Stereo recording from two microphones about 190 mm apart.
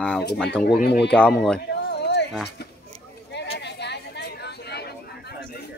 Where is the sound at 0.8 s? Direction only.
60° left (ahead or behind).